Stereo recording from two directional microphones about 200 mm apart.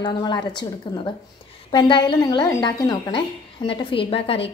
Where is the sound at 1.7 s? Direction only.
25° left (ahead or behind).